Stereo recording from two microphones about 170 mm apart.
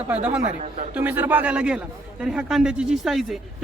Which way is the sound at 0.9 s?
10° right (ahead or behind).